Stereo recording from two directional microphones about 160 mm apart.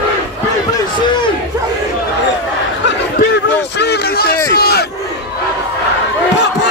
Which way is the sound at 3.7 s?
90° left.